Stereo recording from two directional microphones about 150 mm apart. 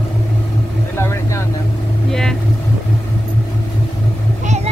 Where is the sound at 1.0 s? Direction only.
20° left (ahead or behind).